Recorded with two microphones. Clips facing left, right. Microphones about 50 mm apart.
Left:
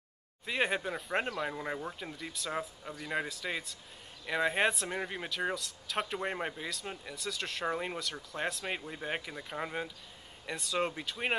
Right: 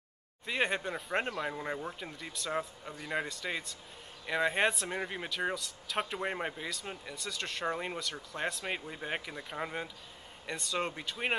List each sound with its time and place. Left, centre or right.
0.5 s speech: centre